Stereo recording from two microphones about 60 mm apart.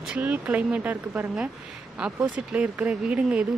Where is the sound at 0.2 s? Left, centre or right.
Right.